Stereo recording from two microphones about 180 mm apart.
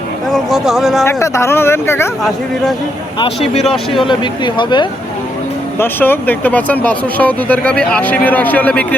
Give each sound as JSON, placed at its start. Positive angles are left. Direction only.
{"t": 0.3, "sound": "speech", "side_deg": 0}
{"t": 1.0, "sound": "speech", "side_deg": 15}
{"t": 3.2, "sound": "speech", "side_deg": 35}
{"t": 5.8, "sound": "speech", "side_deg": 10}